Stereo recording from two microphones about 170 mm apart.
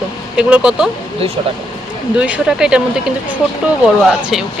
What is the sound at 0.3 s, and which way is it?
Speech, 5° right (ahead or behind).